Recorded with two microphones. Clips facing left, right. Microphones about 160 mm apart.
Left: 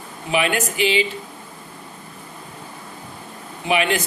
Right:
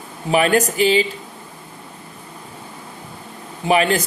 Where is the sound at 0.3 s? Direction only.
40° right (ahead or behind).